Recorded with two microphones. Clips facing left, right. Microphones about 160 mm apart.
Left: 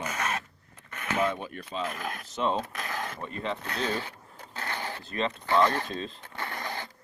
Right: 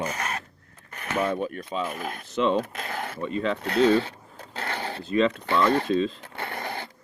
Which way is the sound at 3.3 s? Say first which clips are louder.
Right 7 dB; 90° right.